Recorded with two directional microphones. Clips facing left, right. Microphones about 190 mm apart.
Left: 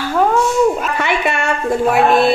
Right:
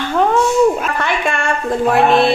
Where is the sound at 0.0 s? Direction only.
5° left (ahead or behind).